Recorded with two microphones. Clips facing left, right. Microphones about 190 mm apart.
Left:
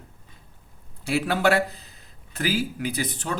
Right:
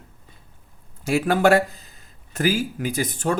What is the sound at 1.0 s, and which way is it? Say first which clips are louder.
Speech: right 4 dB; 45° right (ahead or behind).